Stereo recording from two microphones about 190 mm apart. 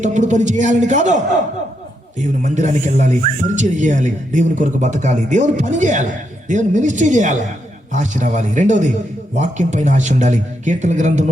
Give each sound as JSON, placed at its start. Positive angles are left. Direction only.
{"t": 0.0, "sound": "speech", "side_deg": -40}